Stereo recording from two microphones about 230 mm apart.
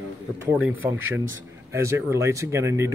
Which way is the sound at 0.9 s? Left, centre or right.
Right.